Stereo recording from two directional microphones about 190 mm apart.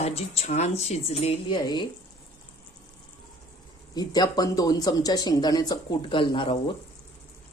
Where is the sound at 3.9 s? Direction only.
20° left (ahead or behind).